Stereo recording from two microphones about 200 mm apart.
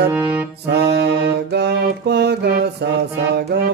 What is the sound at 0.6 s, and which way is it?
Mantra, 55° right (ahead or behind).